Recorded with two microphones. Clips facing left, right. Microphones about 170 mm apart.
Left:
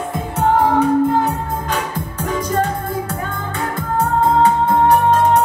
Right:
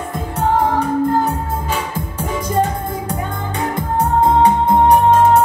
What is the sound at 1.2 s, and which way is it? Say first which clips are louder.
Music: even; 10° right (ahead or behind).